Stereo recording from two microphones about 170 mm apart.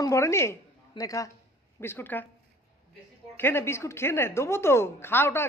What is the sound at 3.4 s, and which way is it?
A woman's voice, 15° left (ahead or behind).